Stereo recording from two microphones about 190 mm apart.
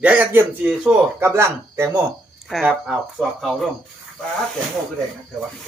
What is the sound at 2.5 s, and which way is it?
Speech, centre (ahead or behind).